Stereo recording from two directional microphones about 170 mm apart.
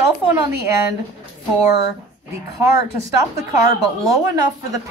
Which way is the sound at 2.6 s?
15° right (ahead or behind).